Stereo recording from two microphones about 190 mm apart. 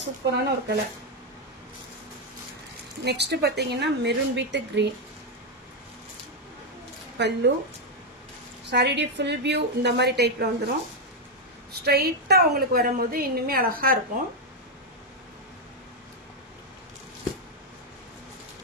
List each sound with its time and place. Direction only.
0.3 s a woman's voice: 60° right (ahead or behind)
3.0 s a woman's voice: 60° right (ahead or behind)
7.2 s a woman's voice: 65° right (ahead or behind)
8.6 s a woman's voice: 65° right (ahead or behind)
11.7 s a woman's voice: 55° right (ahead or behind)